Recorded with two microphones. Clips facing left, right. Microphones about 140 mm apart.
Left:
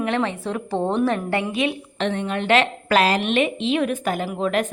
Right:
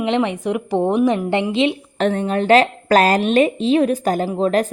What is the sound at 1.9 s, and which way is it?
A woman's voice, 40° right (ahead or behind).